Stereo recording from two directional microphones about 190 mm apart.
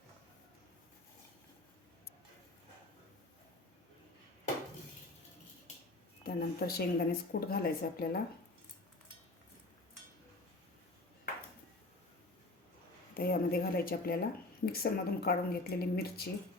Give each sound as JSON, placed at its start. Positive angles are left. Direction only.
{"t": 6.2, "sound": "speech", "side_deg": 55}
{"t": 13.1, "sound": "speech", "side_deg": 50}